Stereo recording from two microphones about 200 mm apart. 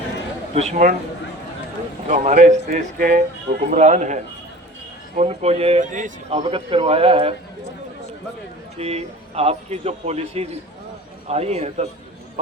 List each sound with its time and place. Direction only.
0.5 s a man's voice: 30° right (ahead or behind)
2.0 s a man's voice: 40° right (ahead or behind)
8.8 s a man's voice: 30° right (ahead or behind)